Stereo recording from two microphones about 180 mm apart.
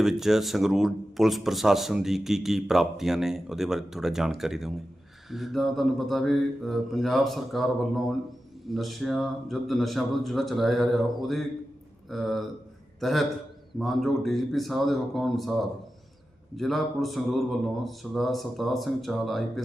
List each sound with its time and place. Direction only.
0.0 s a man's voice: centre (ahead or behind)